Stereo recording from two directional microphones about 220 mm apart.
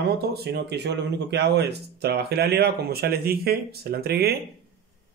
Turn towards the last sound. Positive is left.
turn(degrees=-45)  # may be behind; listen again after turning